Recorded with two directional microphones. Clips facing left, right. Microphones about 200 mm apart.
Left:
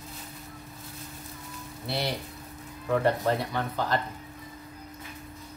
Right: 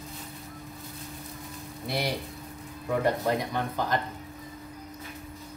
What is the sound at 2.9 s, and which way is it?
Speech, 15° right (ahead or behind).